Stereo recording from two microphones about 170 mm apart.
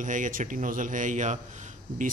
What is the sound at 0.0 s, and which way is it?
Speech, 50° right (ahead or behind).